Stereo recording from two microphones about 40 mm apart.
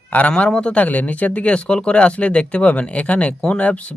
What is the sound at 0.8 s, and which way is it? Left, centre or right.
Speech, left.